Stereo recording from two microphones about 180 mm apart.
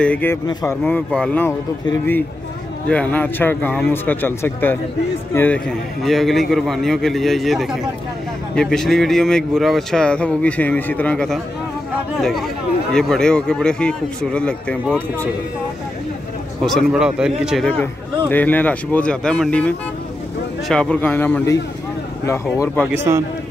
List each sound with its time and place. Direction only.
0.0 s a man's voice: 10° left (ahead or behind)
0.5 s speech: 20° left (ahead or behind)
0.8 s a man's voice: 5° left (ahead or behind)
2.9 s a man's voice: 5° left (ahead or behind)
16.6 s a man's voice: centre (ahead or behind); by 22.8 s 15° left (ahead or behind)
23.1 s a man's voice: 15° right (ahead or behind)